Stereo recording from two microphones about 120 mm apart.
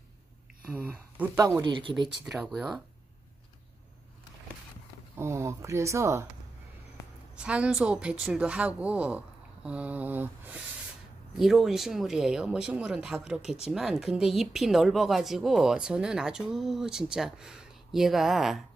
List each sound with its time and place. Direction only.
0.7 s speech: 15° right (ahead or behind)
1.6 s speech: 45° right (ahead or behind)
2.2 s a woman's voice: 5° right (ahead or behind)
5.1 s speech: 20° right (ahead or behind)
7.3 s a woman's voice: 10° right (ahead or behind)
11.3 s a woman's voice: centre (ahead or behind)